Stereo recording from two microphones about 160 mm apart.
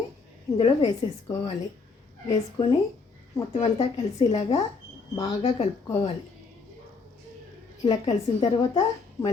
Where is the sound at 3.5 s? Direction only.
35° left (ahead or behind).